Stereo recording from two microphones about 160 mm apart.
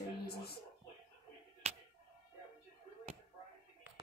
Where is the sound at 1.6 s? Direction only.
40° right (ahead or behind).